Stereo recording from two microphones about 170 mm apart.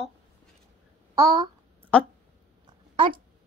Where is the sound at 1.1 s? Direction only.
20° right (ahead or behind).